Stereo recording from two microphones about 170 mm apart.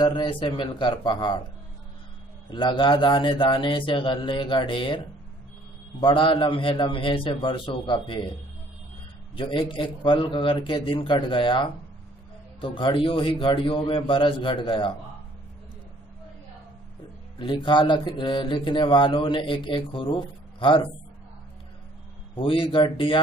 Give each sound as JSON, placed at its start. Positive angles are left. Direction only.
{"t": 0.0, "sound": "speech", "side_deg": 30}
{"t": 2.5, "sound": "speech", "side_deg": 25}
{"t": 9.3, "sound": "speech", "side_deg": 30}
{"t": 17.4, "sound": "speech", "side_deg": 30}
{"t": 22.3, "sound": "speech", "side_deg": 30}